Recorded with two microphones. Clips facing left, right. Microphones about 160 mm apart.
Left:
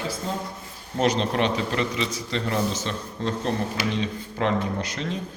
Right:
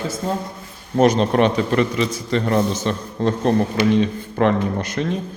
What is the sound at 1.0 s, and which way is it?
A man's voice, 50° right (ahead or behind).